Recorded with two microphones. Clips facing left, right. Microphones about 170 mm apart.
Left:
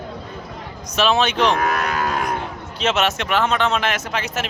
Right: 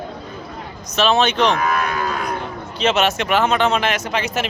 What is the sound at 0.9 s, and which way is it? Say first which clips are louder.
Speech: right 2 dB; 5° left (ahead or behind).